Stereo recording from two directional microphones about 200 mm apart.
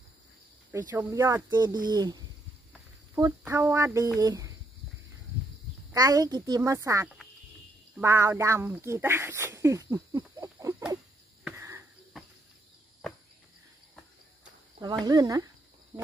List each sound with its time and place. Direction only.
0.7 s speech: 10° right (ahead or behind)
1.5 s speech: 20° right (ahead or behind)
5.9 s speech: 20° right (ahead or behind)
10.4 s frog: 15° right (ahead or behind)
11.4 s cricket: 10° right (ahead or behind)
15.0 s speech: 20° right (ahead or behind)